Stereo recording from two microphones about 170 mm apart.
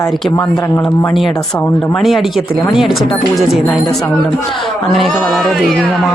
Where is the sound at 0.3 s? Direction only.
20° left (ahead or behind).